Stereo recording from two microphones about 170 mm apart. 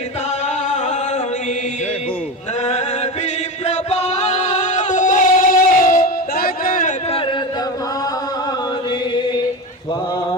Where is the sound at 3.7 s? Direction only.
40° left (ahead or behind).